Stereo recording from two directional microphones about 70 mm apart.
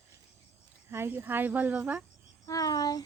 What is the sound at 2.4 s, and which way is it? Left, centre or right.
Speech, left.